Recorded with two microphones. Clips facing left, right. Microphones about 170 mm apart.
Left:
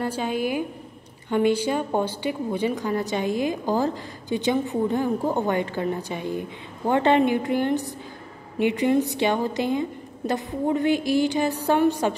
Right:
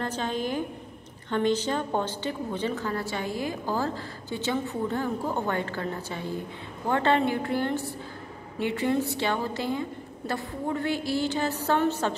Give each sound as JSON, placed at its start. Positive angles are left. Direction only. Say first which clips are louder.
{"t": 0.0, "sound": "a woman's voice", "louder": "left 4 dB", "side_deg": 10}